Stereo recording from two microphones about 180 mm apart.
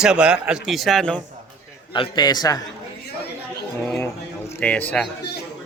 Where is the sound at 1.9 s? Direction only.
25° left (ahead or behind).